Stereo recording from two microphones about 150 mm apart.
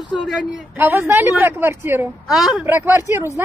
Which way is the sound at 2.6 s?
15° right (ahead or behind).